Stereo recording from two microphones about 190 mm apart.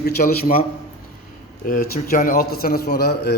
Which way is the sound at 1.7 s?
45° left (ahead or behind).